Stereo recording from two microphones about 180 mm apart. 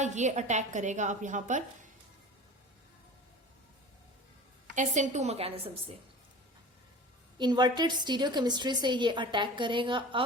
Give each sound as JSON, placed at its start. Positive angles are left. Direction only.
{"t": 0.0, "sound": "a woman's voice", "side_deg": -40}
{"t": 4.7, "sound": "a woman's voice", "side_deg": -45}
{"t": 7.3, "sound": "a woman's voice", "side_deg": -25}